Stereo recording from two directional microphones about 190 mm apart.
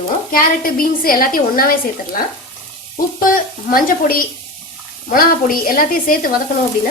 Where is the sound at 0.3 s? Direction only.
50° left (ahead or behind).